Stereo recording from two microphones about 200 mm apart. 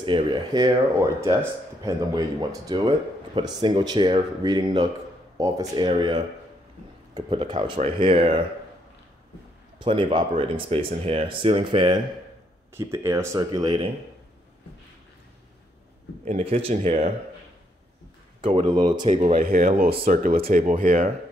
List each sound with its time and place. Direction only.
0.0 s speech: 25° right (ahead or behind)
9.8 s speech: 25° right (ahead or behind)
12.7 s speech: 15° right (ahead or behind)
16.3 s speech: 35° right (ahead or behind)
18.4 s speech: 25° right (ahead or behind)
19.1 s speech: 40° right (ahead or behind)